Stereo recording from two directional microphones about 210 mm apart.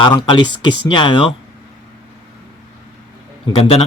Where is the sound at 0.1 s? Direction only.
20° left (ahead or behind).